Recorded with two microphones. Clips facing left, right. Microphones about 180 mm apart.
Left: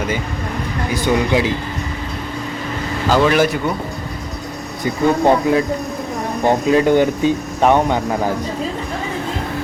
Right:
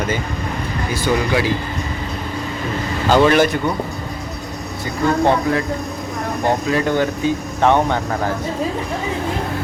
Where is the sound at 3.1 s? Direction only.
5° left (ahead or behind).